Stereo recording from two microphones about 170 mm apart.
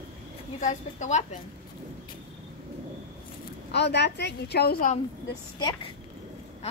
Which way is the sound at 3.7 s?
80° left.